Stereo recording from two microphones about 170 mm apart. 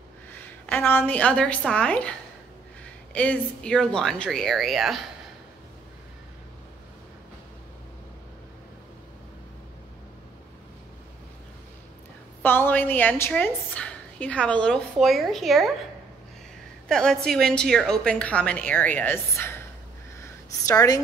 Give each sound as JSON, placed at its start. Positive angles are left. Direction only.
{"t": 0.7, "sound": "a woman's voice", "side_deg": 10}
{"t": 12.4, "sound": "a woman's voice", "side_deg": 10}
{"t": 16.8, "sound": "a woman's voice", "side_deg": 5}
{"t": 20.2, "sound": "a sound", "side_deg": 20}